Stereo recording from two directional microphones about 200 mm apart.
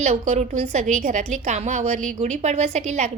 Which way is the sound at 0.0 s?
35° right (ahead or behind).